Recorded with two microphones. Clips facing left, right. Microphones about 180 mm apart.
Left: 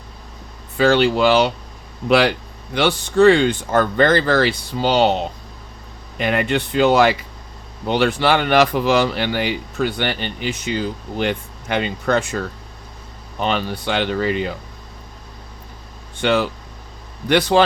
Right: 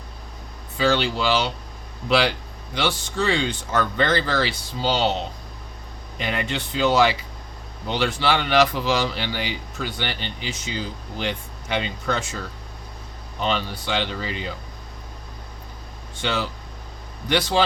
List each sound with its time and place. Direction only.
0.8 s speech: 55° left (ahead or behind)
6.1 s speech: 60° left (ahead or behind)
13.4 s speech: 55° left (ahead or behind)
16.2 s speech: 60° left (ahead or behind)